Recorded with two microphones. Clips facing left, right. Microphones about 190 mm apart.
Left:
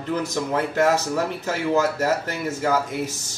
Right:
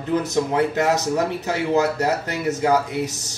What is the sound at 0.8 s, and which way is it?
A man's voice, 15° right (ahead or behind).